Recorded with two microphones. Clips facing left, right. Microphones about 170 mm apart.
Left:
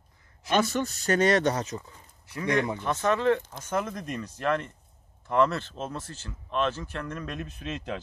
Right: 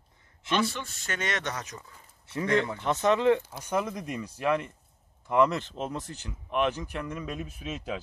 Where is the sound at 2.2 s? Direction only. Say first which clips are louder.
Right 3 dB; 25° right (ahead or behind).